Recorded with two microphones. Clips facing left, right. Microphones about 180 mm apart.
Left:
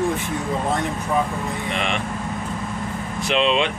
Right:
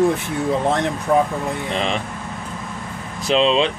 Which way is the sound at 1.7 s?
30° right (ahead or behind).